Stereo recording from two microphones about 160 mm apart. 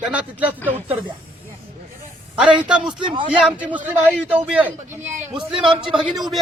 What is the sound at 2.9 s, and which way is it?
Speech, 30° right (ahead or behind).